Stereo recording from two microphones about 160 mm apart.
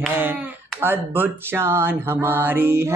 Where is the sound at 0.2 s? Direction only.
15° right (ahead or behind).